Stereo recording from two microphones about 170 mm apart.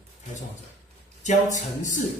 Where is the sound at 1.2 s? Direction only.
45° left (ahead or behind).